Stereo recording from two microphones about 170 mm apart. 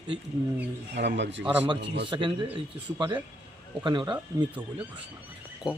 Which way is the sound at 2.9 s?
15° right (ahead or behind).